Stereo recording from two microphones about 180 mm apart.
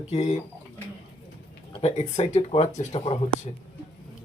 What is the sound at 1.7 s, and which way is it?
Speech, 35° left (ahead or behind).